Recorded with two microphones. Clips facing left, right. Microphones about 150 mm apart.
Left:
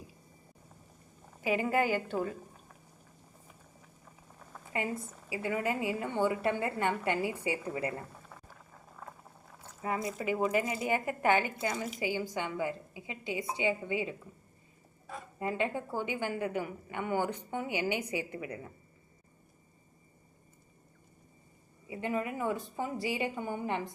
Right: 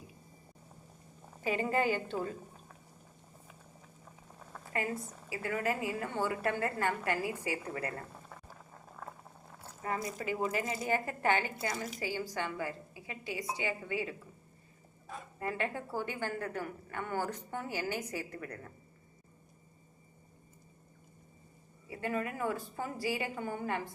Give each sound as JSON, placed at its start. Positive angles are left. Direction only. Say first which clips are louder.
{"t": 1.7, "sound": "a woman's voice", "louder": "left 2 dB", "side_deg": 10}
{"t": 5.3, "sound": "a woman's voice", "louder": "left 2 dB", "side_deg": 20}
{"t": 9.8, "sound": "a woman's voice", "louder": "left 3 dB", "side_deg": 20}
{"t": 15.4, "sound": "a woman's voice", "louder": "left 3 dB", "side_deg": 20}
{"t": 21.8, "sound": "a woman's voice", "louder": "left 2 dB", "side_deg": 20}